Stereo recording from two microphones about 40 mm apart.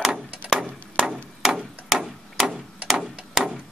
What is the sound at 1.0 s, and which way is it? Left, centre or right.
Chop, centre.